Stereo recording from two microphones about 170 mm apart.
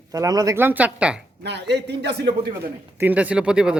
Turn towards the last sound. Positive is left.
turn(degrees=-5)  # may be behind; listen again after turning